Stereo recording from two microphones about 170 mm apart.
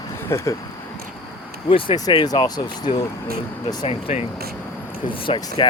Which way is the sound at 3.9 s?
35° left (ahead or behind).